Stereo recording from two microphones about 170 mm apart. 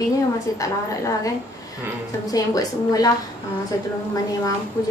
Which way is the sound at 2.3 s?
20° left (ahead or behind).